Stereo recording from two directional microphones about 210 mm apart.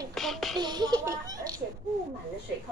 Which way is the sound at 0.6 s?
20° right (ahead or behind).